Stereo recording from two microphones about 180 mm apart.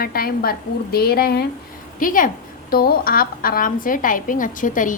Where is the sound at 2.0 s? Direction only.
50° left (ahead or behind).